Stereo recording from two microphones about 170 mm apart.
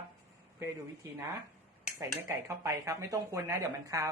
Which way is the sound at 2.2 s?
15° right (ahead or behind).